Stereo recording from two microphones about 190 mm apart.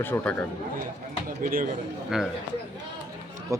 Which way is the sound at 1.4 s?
50° right (ahead or behind).